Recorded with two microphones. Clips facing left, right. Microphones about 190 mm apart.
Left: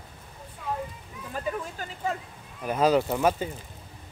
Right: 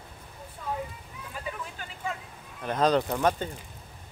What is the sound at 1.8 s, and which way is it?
Speech, 40° left (ahead or behind).